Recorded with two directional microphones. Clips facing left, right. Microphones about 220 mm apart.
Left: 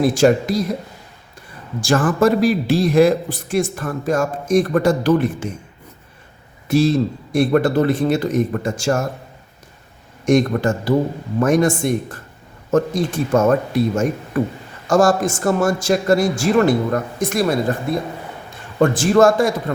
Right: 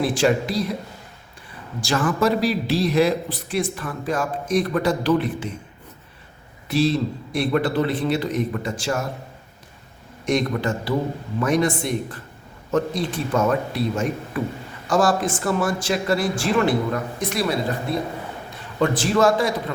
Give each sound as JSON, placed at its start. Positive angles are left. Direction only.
{"t": 0.0, "sound": "a man's voice", "side_deg": 45}
{"t": 1.8, "sound": "a man's voice", "side_deg": 45}
{"t": 6.7, "sound": "a man's voice", "side_deg": 45}
{"t": 10.2, "sound": "a man's voice", "side_deg": 45}
{"t": 18.8, "sound": "a man's voice", "side_deg": 45}